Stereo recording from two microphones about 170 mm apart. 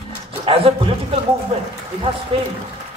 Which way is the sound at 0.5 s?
35° right (ahead or behind).